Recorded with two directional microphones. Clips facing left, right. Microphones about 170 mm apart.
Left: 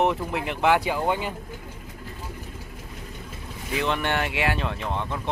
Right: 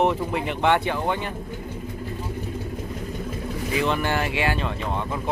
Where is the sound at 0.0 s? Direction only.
Centre (ahead or behind).